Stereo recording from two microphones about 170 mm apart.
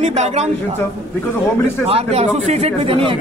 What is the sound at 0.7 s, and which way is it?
A man's voice, 15° left (ahead or behind).